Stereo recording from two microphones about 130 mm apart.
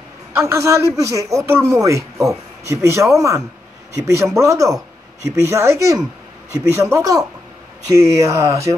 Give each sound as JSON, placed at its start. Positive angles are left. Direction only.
{"t": 0.3, "sound": "speech", "side_deg": -20}